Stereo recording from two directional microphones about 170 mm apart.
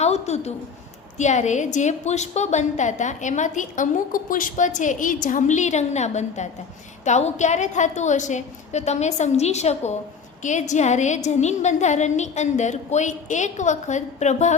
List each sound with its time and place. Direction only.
0.0 s a woman's voice: 40° left (ahead or behind)